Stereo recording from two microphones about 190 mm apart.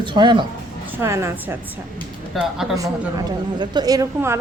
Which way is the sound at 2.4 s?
Centre (ahead or behind).